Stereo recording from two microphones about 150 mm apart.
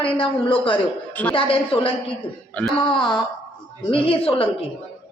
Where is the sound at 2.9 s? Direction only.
30° left (ahead or behind).